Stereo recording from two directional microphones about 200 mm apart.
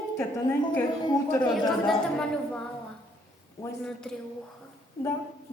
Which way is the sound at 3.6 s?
15° left (ahead or behind).